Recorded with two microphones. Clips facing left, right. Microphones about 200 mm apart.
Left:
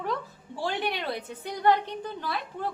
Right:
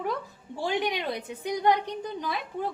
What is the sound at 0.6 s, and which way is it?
A woman's voice, 15° right (ahead or behind).